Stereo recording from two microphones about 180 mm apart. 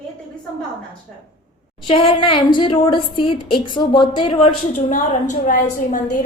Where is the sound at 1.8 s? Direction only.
30° left (ahead or behind).